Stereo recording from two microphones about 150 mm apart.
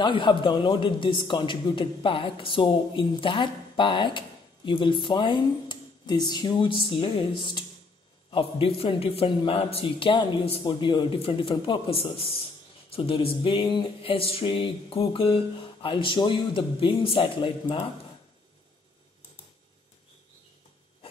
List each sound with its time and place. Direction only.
0.0 s speech: 30° left (ahead or behind)